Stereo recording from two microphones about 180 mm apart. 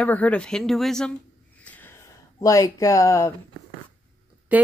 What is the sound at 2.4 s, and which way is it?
Speech, 20° left (ahead or behind).